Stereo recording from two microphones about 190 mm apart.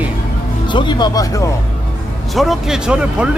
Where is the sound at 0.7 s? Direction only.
25° left (ahead or behind).